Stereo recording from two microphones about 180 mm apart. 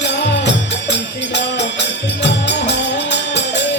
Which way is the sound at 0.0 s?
70° left (ahead or behind).